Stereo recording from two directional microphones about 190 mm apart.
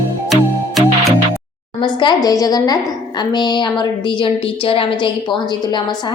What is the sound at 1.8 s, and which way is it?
A woman's voice, 25° left (ahead or behind).